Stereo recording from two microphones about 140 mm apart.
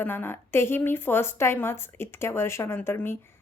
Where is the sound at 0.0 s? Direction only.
15° left (ahead or behind).